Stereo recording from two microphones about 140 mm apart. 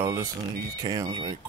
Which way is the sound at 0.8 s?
30° right (ahead or behind).